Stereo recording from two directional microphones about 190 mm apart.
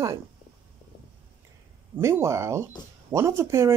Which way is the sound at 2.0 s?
15° right (ahead or behind).